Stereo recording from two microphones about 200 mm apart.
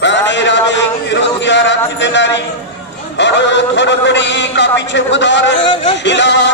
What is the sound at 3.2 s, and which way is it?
A man's voice, 60° left (ahead or behind).